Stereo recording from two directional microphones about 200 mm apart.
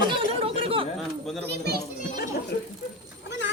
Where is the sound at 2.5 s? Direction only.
55° left (ahead or behind).